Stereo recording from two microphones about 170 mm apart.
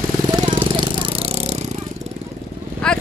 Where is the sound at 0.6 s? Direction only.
30° right (ahead or behind).